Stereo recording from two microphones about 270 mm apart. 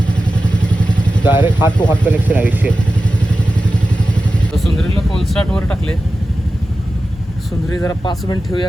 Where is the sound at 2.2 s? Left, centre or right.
Centre.